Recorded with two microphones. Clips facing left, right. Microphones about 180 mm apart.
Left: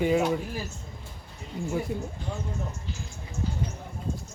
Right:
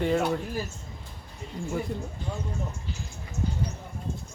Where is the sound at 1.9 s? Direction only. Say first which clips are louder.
Left 2 dB; 5° left (ahead or behind).